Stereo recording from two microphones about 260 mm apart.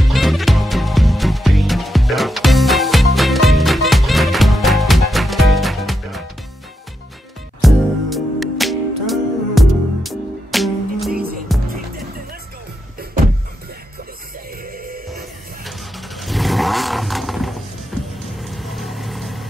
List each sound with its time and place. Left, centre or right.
0.0 s music: centre
7.6 s music: centre
11.1 s music: right
14.7 s music: right
15.6 s vehicle: centre